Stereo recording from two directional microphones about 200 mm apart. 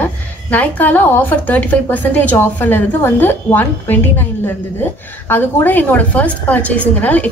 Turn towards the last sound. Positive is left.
turn(degrees=5)  # may be behind; listen again after turning